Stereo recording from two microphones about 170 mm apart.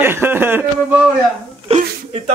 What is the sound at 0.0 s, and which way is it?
Speech, 15° right (ahead or behind).